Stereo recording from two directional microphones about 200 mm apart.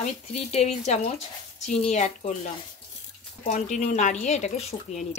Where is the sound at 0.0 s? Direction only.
35° left (ahead or behind).